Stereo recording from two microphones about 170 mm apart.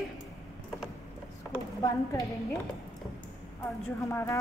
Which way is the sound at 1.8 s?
20° left (ahead or behind).